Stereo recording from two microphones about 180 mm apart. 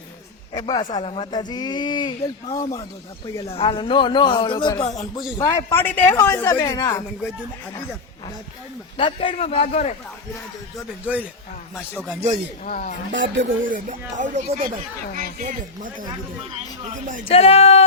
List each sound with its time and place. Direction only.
0.5 s speech: 25° left (ahead or behind)
9.0 s a man's voice: 30° left (ahead or behind)
11.0 s a man's voice: 10° right (ahead or behind)
12.6 s speech: 50° left (ahead or behind)
13.1 s speech: 90° right
13.6 s speech: 50° right (ahead or behind)
17.2 s a man's voice: 35° left (ahead or behind)